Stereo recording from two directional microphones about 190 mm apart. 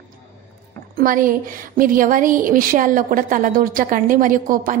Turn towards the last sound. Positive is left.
turn(degrees=-45)  # may be behind; listen again after turning